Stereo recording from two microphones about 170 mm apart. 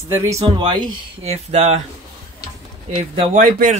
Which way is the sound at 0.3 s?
25° right (ahead or behind).